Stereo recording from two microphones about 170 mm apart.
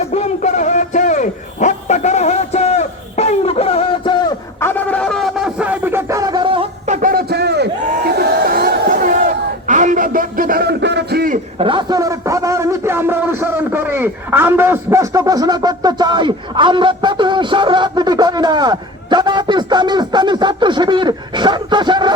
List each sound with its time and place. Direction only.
0.0 s bow-wow: 40° left (ahead or behind)
4.6 s music: 10° left (ahead or behind); by 6.7 s 30° right (ahead or behind)
6.8 s crowd: 50° right (ahead or behind); by 11.3 s 65° right (ahead or behind)
11.6 s a sound: 30° right (ahead or behind)